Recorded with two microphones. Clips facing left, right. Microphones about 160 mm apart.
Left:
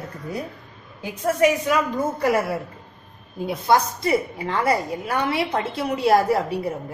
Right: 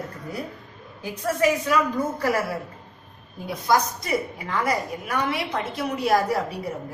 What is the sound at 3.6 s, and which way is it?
A woman's voice, 25° left (ahead or behind).